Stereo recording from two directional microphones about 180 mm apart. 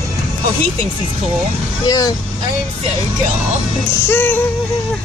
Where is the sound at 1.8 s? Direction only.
20° left (ahead or behind).